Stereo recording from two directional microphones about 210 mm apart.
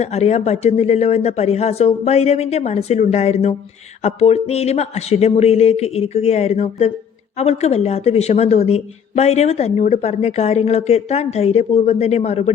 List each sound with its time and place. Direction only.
0.0 s speech: 30° left (ahead or behind)